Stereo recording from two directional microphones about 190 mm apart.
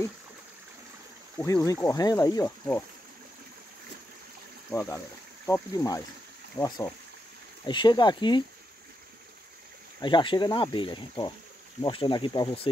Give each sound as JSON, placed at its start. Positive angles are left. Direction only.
{"t": 1.4, "sound": "speech", "side_deg": 20}
{"t": 4.6, "sound": "speech", "side_deg": 15}
{"t": 9.9, "sound": "speech", "side_deg": 25}